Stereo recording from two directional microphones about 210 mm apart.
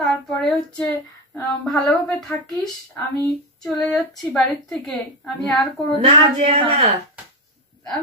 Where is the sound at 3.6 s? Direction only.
5° left (ahead or behind).